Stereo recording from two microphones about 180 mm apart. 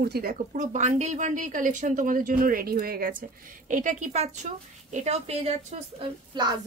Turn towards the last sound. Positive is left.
turn(degrees=-25)  # may be behind; listen again after turning